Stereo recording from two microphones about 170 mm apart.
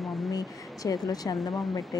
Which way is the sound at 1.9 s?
20° left (ahead or behind).